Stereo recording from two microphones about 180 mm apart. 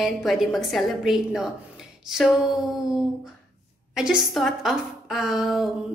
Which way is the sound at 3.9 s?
5° right (ahead or behind).